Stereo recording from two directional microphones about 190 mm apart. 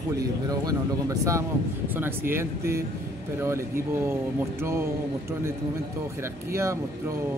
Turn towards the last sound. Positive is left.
turn(degrees=-15)  # may be behind; listen again after turning